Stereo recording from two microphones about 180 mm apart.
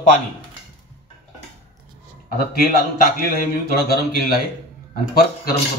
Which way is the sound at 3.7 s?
60° left (ahead or behind).